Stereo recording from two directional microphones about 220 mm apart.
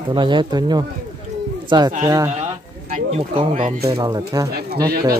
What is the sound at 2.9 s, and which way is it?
Speech, 35° right (ahead or behind).